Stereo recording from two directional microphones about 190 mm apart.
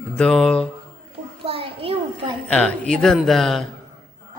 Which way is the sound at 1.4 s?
30° right (ahead or behind).